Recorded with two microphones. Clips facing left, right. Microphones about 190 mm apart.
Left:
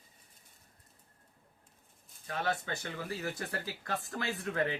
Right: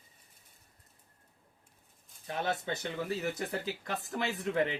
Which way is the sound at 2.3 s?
20° right (ahead or behind).